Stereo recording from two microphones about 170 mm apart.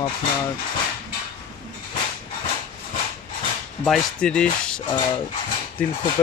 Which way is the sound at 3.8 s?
5° left (ahead or behind).